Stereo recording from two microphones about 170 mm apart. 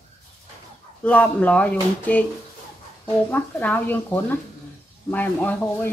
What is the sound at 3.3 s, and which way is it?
Speech, 10° left (ahead or behind).